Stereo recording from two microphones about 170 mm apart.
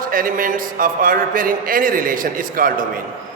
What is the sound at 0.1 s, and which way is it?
A man's voice, 55° right (ahead or behind).